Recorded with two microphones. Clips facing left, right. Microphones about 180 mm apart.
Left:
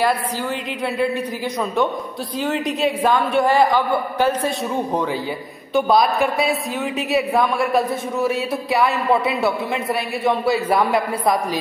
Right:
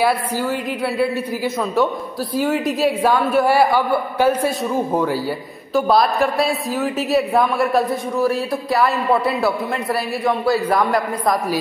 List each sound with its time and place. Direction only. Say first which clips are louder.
0.0 s a woman's voice: right 2 dB; 5° right (ahead or behind)